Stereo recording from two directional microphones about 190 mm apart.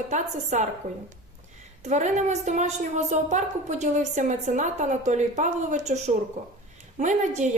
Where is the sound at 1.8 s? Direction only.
40° right (ahead or behind).